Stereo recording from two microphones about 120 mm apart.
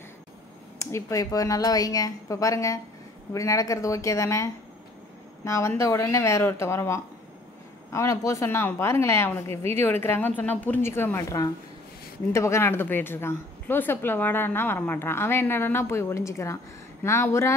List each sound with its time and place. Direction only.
0.7 s a woman's voice: 25° left (ahead or behind)